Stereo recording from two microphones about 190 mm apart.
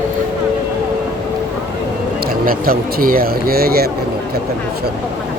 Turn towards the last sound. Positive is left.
turn(degrees=-55)  # may be behind; listen again after turning